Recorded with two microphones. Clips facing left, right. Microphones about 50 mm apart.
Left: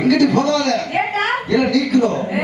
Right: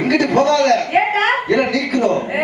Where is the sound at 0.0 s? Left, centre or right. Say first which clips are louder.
Even; right.